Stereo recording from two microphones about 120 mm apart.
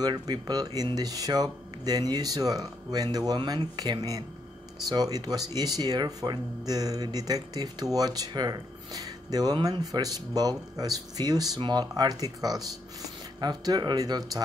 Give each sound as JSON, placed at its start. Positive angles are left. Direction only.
{"t": 0.0, "sound": "speech", "side_deg": -35}